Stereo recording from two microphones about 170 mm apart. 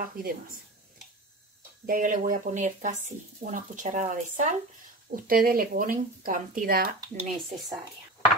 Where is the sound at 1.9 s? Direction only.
50° right (ahead or behind).